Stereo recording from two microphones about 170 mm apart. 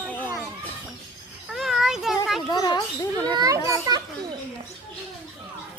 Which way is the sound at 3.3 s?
20° right (ahead or behind).